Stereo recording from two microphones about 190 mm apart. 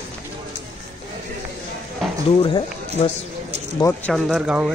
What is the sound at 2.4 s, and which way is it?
Speech, 25° left (ahead or behind).